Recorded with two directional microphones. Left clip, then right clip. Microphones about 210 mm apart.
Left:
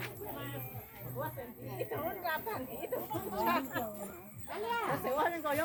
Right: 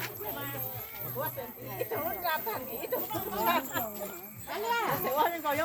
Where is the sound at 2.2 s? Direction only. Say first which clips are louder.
Right 4 dB; 10° right (ahead or behind).